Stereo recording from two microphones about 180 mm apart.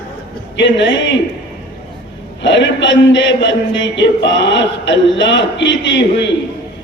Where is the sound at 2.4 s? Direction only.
80° left.